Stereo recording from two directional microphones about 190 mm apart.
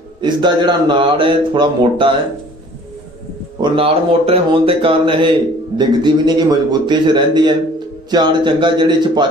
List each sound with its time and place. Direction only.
0.2 s a man's voice: 25° right (ahead or behind)
3.6 s a man's voice: 30° right (ahead or behind)